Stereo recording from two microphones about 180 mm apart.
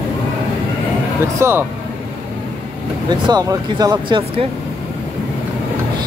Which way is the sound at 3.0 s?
25° right (ahead or behind).